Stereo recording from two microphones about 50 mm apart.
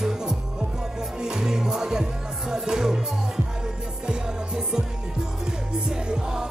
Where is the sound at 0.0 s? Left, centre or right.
Centre.